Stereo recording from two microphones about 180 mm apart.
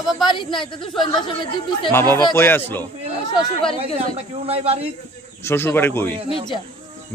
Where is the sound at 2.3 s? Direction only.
10° left (ahead or behind).